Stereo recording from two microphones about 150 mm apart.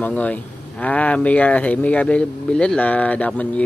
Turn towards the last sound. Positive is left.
turn(degrees=10)  # may be behind; listen again after turning